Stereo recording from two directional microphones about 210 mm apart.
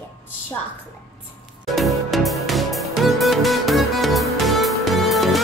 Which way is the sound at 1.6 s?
Centre (ahead or behind).